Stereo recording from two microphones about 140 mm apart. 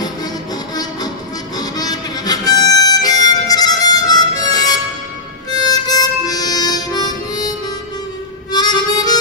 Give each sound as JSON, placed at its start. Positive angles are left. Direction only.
{"t": 1.6, "sound": "harmonica", "side_deg": 30}